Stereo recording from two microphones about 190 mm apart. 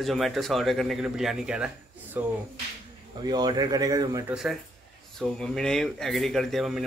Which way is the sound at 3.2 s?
20° right (ahead or behind).